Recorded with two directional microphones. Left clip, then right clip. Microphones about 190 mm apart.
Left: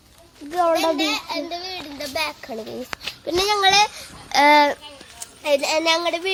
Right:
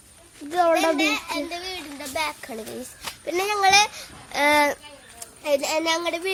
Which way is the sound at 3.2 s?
50° left (ahead or behind).